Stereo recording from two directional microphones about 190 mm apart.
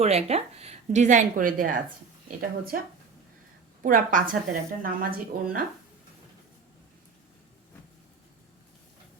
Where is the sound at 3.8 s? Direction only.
45° right (ahead or behind).